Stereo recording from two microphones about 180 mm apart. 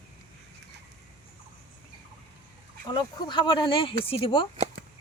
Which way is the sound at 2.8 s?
25° left (ahead or behind).